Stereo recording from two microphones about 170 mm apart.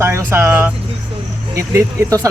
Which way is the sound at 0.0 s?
15° right (ahead or behind).